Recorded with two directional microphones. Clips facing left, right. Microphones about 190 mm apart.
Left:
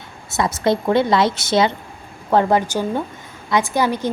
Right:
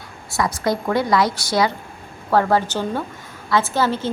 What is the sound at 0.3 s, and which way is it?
A woman's voice, 25° left (ahead or behind).